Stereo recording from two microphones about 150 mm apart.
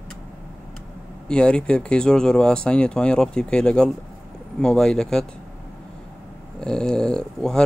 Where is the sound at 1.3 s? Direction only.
5° left (ahead or behind).